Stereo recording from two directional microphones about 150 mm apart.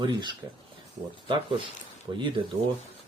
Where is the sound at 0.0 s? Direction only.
30° right (ahead or behind).